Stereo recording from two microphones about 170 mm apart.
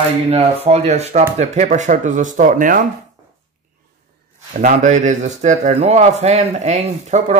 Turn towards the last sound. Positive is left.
turn(degrees=-40)  # may be behind; listen again after turning